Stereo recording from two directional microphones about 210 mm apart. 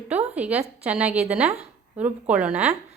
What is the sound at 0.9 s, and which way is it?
A woman's voice, 5° right (ahead or behind).